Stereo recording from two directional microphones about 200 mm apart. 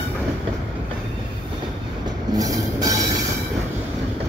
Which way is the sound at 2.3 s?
20° right (ahead or behind).